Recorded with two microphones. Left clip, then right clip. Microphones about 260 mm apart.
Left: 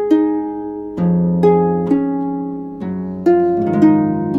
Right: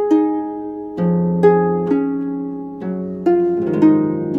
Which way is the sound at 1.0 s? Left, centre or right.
Centre.